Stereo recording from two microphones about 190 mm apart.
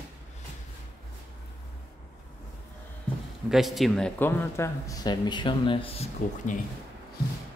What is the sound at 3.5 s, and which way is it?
Speech, centre (ahead or behind).